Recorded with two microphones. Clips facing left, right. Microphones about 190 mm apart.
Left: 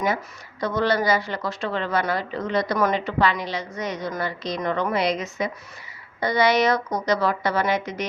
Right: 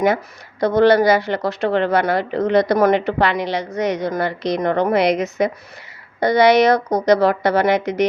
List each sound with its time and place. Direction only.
0.6 s a woman's voice: 70° right (ahead or behind)